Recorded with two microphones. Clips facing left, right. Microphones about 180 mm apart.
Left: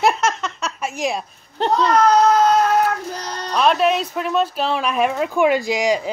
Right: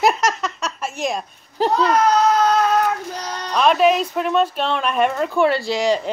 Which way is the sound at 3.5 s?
Centre (ahead or behind).